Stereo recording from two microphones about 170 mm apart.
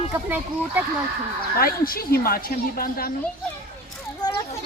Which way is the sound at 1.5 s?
60° left (ahead or behind).